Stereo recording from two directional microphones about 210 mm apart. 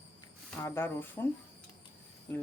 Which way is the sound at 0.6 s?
10° left (ahead or behind).